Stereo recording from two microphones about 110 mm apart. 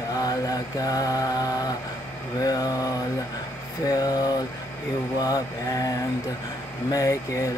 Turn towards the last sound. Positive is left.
turn(degrees=30)  # may be behind; listen again after turning